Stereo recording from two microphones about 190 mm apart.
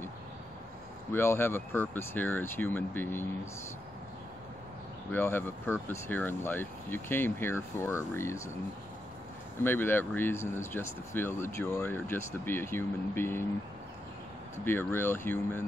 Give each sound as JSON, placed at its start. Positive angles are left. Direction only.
{"t": 1.1, "sound": "speech", "side_deg": 10}
{"t": 5.1, "sound": "speech", "side_deg": 10}
{"t": 9.6, "sound": "speech", "side_deg": 10}
{"t": 14.6, "sound": "speech", "side_deg": 10}